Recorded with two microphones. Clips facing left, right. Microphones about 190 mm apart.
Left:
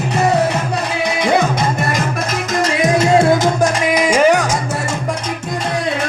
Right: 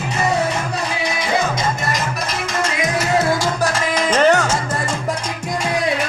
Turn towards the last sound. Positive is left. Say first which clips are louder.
# left 2 dB
turn(degrees=10)  # may be behind; listen again after turning